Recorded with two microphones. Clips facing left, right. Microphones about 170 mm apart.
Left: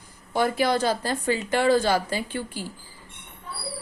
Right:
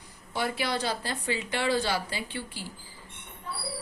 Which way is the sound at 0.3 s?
45° left (ahead or behind).